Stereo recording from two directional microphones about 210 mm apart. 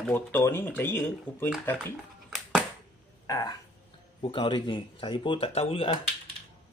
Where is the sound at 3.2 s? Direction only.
15° left (ahead or behind).